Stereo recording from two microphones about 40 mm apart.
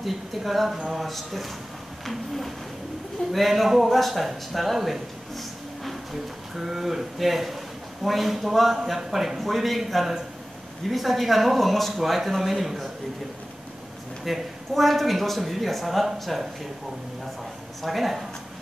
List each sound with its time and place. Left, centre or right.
0.0 s speech: centre
6.5 s speech: centre
14.2 s speech: centre
17.8 s speech: centre